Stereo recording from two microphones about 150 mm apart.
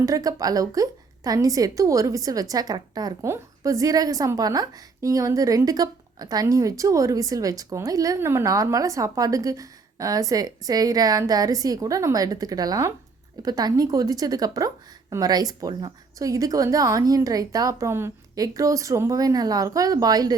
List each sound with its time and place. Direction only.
0.0 s a woman's voice: 25° right (ahead or behind)